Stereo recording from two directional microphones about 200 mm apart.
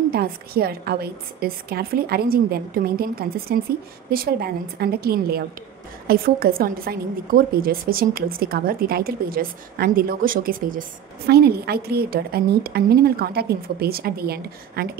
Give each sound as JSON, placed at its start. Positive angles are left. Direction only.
{"t": 0.1, "sound": "a woman's voice", "side_deg": -50}